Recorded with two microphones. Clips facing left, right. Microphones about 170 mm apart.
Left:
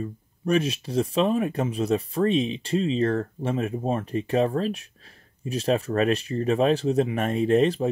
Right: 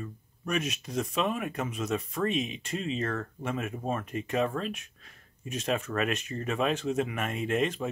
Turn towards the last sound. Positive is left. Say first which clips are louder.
# left 8 dB
turn(degrees=35)  # may be behind; listen again after turning